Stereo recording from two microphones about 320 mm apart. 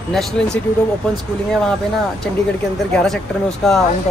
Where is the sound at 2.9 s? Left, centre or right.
Centre.